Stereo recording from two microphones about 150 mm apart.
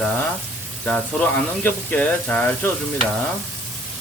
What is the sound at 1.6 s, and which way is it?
Speech, 10° left (ahead or behind).